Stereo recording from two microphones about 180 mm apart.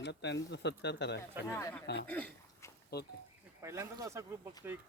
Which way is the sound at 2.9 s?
65° left (ahead or behind).